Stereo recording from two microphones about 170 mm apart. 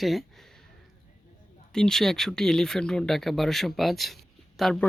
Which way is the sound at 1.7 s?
5° left (ahead or behind).